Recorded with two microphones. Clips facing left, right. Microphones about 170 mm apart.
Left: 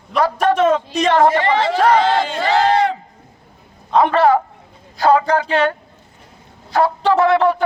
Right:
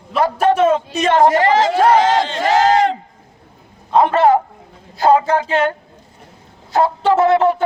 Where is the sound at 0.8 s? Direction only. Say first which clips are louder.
Left 1 dB; 5° right (ahead or behind).